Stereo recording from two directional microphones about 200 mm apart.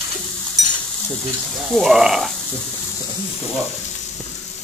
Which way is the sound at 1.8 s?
Centre (ahead or behind).